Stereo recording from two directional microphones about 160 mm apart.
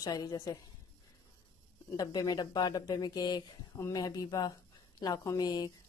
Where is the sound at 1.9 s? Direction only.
25° left (ahead or behind).